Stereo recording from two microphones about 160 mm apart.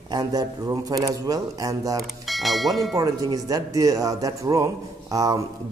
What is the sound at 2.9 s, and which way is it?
A man's voice, 20° right (ahead or behind).